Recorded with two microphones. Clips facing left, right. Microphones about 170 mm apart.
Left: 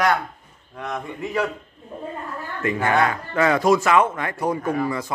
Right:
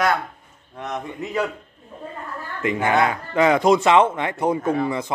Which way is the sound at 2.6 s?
20° right (ahead or behind).